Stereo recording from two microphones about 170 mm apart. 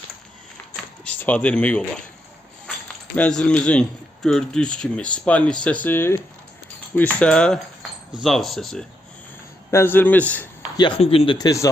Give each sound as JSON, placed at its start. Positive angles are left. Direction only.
{"t": 1.0, "sound": "speech", "side_deg": 10}
{"t": 3.2, "sound": "a man's voice", "side_deg": 5}
{"t": 9.7, "sound": "a man's voice", "side_deg": 10}
{"t": 10.8, "sound": "speech", "side_deg": 30}
{"t": 11.3, "sound": "speech", "side_deg": 20}